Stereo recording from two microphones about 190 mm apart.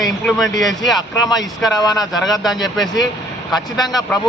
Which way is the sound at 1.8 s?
20° left (ahead or behind).